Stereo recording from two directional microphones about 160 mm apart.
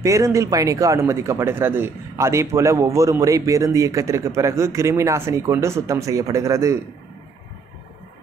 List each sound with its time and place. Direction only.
0.0 s speech: 20° right (ahead or behind)